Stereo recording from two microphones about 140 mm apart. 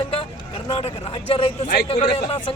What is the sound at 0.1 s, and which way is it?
Vehicle, 40° left (ahead or behind).